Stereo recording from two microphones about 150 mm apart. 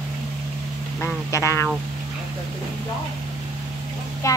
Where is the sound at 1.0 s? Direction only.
20° left (ahead or behind).